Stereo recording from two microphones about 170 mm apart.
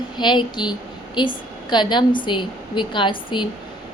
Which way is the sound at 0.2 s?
25° left (ahead or behind).